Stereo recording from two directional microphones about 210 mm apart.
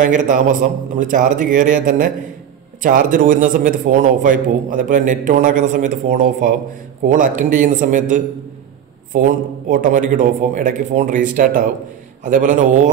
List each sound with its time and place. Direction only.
0.0 s a man's voice: 40° right (ahead or behind)